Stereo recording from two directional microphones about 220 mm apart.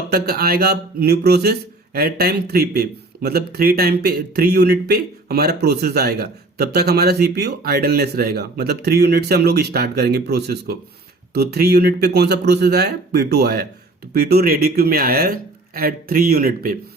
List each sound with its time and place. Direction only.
0.1 s speech: 45° right (ahead or behind)